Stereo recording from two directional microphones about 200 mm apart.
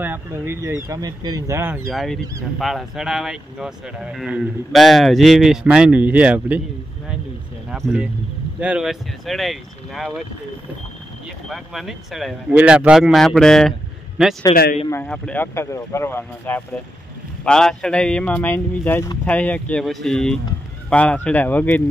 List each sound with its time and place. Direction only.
0.0 s speech: 10° right (ahead or behind)
1.9 s speech: centre (ahead or behind)
7.7 s speech: centre (ahead or behind)
11.4 s speech: centre (ahead or behind)
14.5 s speech: 50° left (ahead or behind)
14.9 s speech: 10° left (ahead or behind)